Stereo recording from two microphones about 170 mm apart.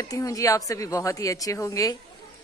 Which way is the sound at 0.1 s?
20° left (ahead or behind).